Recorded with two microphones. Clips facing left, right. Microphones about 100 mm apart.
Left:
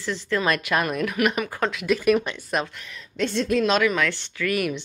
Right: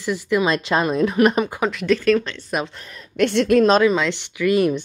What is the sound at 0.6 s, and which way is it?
Speech, 25° right (ahead or behind).